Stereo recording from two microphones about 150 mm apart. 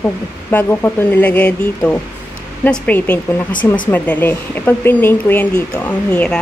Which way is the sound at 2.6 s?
10° left (ahead or behind).